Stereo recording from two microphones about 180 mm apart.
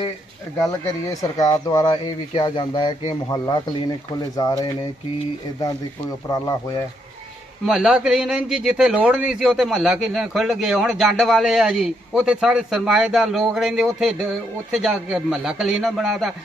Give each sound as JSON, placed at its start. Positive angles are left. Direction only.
{"t": 0.6, "sound": "speech", "side_deg": 20}
{"t": 6.2, "sound": "speech", "side_deg": 20}
{"t": 7.6, "sound": "a man's voice", "side_deg": -5}